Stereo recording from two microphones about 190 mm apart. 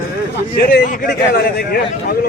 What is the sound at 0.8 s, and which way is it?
Speech, 45° left (ahead or behind).